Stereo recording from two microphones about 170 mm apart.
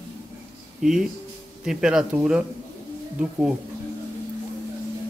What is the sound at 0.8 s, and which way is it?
Speech, centre (ahead or behind).